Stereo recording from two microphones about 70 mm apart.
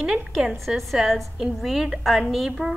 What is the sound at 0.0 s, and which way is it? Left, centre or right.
A woman's voice, centre.